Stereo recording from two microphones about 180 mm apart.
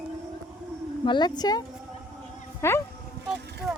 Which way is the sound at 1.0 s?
25° left (ahead or behind).